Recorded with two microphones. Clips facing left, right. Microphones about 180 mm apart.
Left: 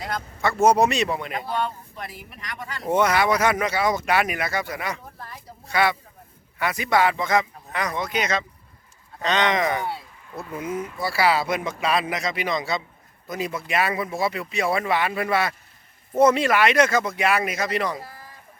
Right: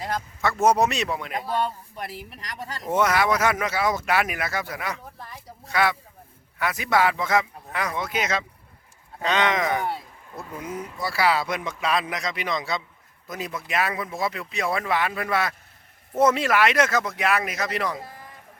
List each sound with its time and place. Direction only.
0.6 s speech: centre (ahead or behind)
1.5 s speech: 35° right (ahead or behind)
2.9 s speech: centre (ahead or behind)